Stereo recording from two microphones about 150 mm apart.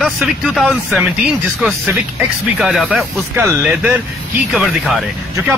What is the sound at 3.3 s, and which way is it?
Speech, 15° right (ahead or behind).